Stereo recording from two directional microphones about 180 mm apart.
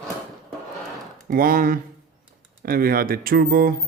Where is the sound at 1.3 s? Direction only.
50° right (ahead or behind).